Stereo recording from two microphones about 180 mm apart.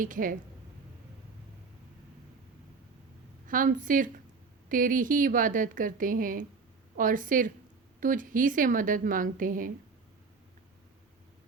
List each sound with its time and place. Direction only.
0.0 s a woman's voice: 50° right (ahead or behind)
3.4 s a woman's voice: 50° right (ahead or behind)